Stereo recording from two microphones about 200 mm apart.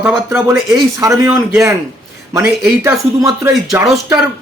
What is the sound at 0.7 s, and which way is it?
Speech, 15° right (ahead or behind).